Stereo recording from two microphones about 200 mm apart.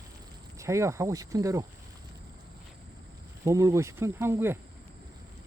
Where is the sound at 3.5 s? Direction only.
15° right (ahead or behind).